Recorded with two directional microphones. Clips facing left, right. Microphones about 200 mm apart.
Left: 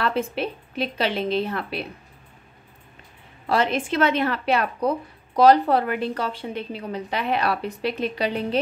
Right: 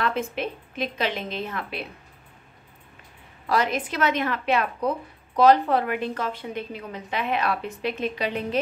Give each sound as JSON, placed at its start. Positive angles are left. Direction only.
{"t": 0.0, "sound": "speech", "side_deg": 35}
{"t": 3.4, "sound": "speech", "side_deg": 25}